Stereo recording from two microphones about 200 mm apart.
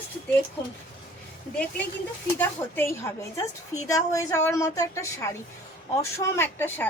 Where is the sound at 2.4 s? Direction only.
10° left (ahead or behind).